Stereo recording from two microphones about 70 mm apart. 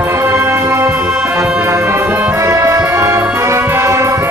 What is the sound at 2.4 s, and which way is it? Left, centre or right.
Brass instrument, right.